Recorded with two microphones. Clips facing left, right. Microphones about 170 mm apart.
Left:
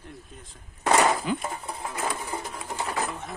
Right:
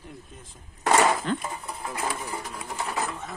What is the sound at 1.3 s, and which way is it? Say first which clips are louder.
Speech: even; 10° left (ahead or behind).